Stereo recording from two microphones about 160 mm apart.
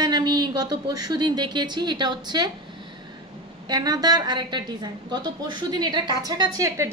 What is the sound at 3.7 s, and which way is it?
A woman's voice, 25° right (ahead or behind).